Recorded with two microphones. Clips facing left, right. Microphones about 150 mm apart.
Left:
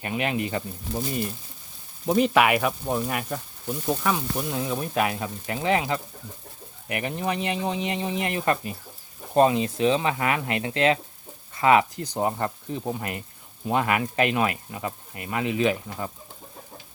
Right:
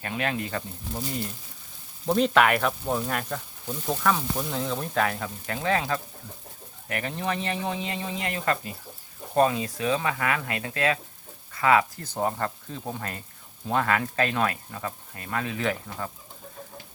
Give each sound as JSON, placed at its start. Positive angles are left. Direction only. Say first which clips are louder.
{"t": 0.0, "sound": "speech", "louder": "left 3 dB", "side_deg": 15}
{"t": 2.0, "sound": "speech", "louder": "left 1 dB", "side_deg": 10}